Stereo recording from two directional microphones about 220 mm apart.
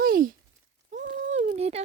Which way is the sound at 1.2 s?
35° right (ahead or behind).